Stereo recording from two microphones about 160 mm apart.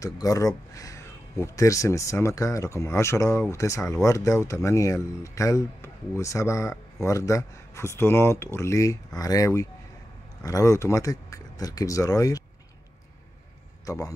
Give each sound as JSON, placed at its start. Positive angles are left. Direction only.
{"t": 0.0, "sound": "speech", "side_deg": 20}
{"t": 13.8, "sound": "speech", "side_deg": 20}